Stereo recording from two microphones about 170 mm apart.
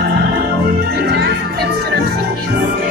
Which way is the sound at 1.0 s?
70° right (ahead or behind).